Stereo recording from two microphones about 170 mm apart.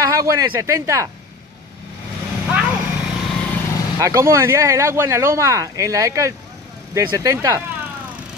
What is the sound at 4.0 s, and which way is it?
Speech, 15° right (ahead or behind).